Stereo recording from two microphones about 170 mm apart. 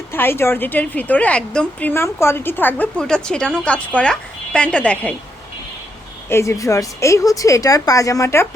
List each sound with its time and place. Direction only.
0.1 s a woman's voice: 15° left (ahead or behind)
6.2 s speech: 15° left (ahead or behind)